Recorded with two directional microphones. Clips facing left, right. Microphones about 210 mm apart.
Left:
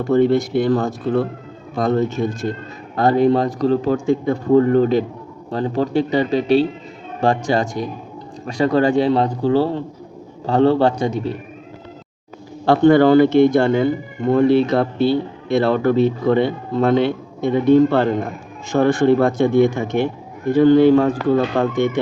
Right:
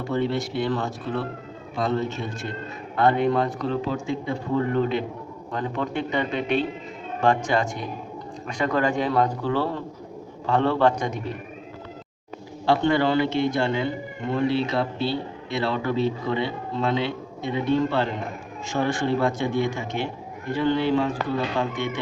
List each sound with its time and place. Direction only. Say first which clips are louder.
0.0 s speech: left 10 dB; 45° left (ahead or behind); by 11.3 s 30° left (ahead or behind)
12.6 s speech: left 9 dB; 50° left (ahead or behind)